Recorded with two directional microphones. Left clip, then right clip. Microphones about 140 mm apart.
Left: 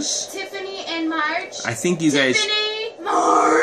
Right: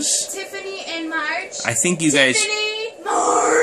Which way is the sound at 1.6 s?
20° right (ahead or behind).